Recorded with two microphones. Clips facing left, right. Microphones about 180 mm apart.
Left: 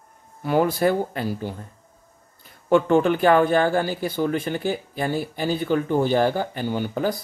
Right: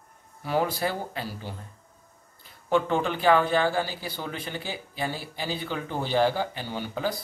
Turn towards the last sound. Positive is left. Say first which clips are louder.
# left 6 dB
turn(degrees=50)  # may be behind; listen again after turning